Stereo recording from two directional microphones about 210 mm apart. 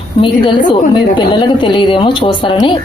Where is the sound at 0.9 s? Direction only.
20° left (ahead or behind).